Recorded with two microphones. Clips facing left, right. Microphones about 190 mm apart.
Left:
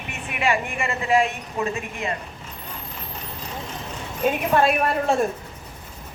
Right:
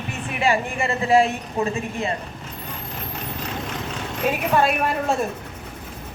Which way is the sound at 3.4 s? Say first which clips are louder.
Right 3 dB; 90° right.